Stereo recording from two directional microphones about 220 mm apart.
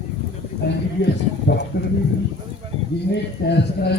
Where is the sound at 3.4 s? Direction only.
45° left (ahead or behind).